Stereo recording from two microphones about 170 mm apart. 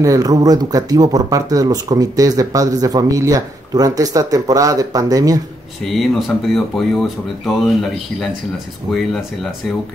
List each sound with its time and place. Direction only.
0.0 s speech: 20° right (ahead or behind)
5.9 s speech: centre (ahead or behind)